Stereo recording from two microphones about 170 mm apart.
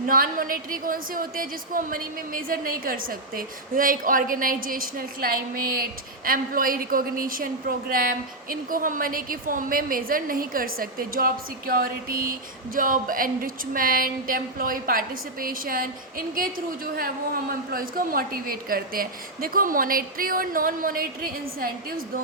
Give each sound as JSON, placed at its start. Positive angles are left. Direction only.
{"t": 0.1, "sound": "a woman's voice", "side_deg": -55}